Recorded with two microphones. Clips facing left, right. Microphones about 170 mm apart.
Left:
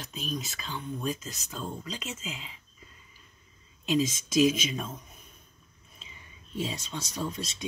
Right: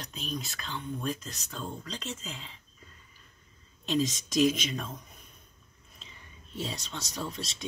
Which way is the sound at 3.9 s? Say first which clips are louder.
Left 2 dB; 5° left (ahead or behind).